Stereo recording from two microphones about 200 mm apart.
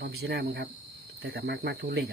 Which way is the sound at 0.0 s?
50° right (ahead or behind).